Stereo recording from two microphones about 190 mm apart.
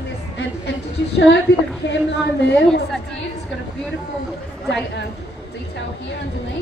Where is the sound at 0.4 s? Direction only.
65° left (ahead or behind).